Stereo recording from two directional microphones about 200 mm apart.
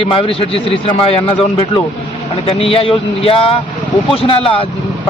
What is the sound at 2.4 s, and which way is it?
A man's voice, 30° left (ahead or behind).